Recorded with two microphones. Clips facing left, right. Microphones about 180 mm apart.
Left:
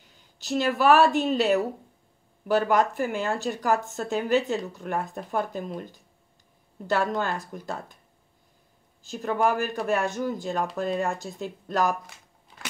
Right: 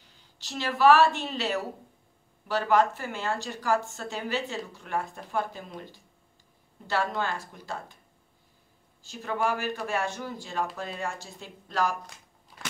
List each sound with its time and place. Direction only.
0.5 s speech: 45° left (ahead or behind)
6.9 s speech: 45° left (ahead or behind)
9.1 s speech: 45° left (ahead or behind)